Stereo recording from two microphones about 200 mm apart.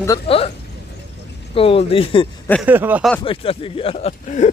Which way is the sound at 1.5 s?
30° left (ahead or behind).